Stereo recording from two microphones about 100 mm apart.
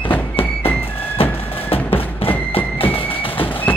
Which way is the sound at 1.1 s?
70° left (ahead or behind).